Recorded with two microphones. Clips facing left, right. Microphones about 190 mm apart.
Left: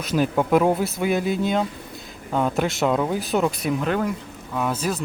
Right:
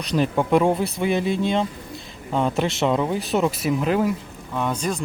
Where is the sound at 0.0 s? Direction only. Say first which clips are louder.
Even; 5° left (ahead or behind).